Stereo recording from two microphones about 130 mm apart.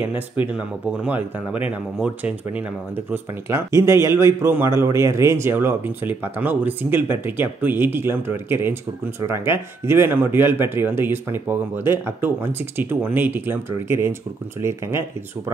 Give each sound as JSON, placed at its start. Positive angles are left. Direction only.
{"t": 0.0, "sound": "a man's voice", "side_deg": -10}
{"t": 3.1, "sound": "a man's voice", "side_deg": -20}